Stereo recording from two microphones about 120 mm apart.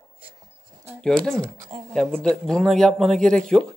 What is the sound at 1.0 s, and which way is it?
Speech, 5° left (ahead or behind).